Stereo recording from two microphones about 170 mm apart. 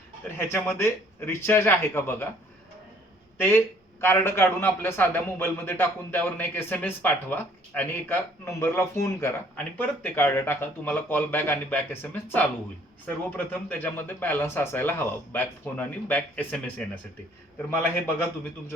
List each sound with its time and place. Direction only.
0.3 s a man's voice: 10° left (ahead or behind)
3.3 s a man's voice: 10° left (ahead or behind)